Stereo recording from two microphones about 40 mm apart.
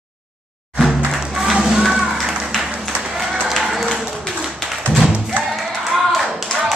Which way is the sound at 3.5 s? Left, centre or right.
Centre.